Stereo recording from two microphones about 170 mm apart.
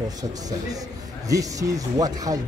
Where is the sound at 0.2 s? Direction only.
20° right (ahead or behind).